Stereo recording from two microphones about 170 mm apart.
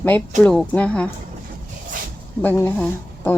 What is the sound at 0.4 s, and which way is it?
Speech, 5° left (ahead or behind).